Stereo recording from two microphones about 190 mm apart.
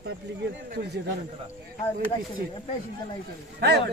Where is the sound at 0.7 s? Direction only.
55° right (ahead or behind).